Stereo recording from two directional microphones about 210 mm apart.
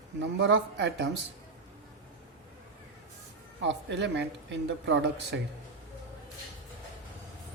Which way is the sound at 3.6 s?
60° right (ahead or behind).